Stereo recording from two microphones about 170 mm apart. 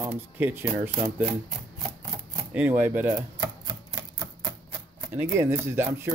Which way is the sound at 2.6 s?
10° right (ahead or behind).